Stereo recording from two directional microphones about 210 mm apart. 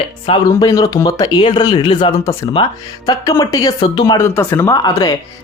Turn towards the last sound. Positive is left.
turn(degrees=20)  # may be behind; listen again after turning